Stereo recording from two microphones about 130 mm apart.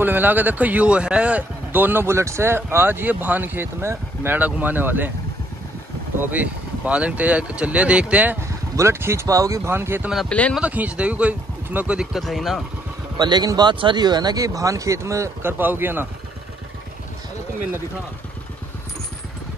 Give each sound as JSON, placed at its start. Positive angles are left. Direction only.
{"t": 0.0, "sound": "speech", "side_deg": -15}
{"t": 6.3, "sound": "speech", "side_deg": -10}
{"t": 8.7, "sound": "speech", "side_deg": -20}
{"t": 13.2, "sound": "speech", "side_deg": -30}